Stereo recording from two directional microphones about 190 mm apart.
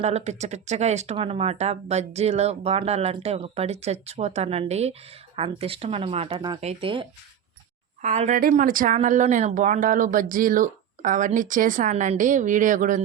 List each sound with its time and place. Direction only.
0.0 s speech: 35° right (ahead or behind)
8.0 s speech: 40° right (ahead or behind)